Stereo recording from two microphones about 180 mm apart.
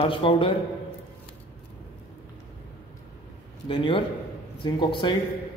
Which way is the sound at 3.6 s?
30° left (ahead or behind).